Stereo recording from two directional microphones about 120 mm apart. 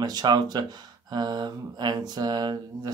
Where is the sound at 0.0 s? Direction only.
35° right (ahead or behind).